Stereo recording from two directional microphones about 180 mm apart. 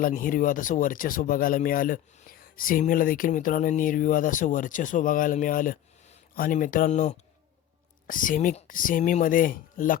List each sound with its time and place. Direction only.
0.0 s speech: 50° left (ahead or behind)